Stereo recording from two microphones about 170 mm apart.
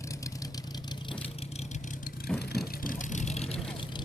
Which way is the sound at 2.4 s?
60° left (ahead or behind).